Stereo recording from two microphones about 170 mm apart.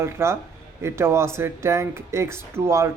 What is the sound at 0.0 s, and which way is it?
Speech, 15° right (ahead or behind).